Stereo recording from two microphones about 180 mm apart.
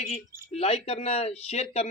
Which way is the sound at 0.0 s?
35° left (ahead or behind).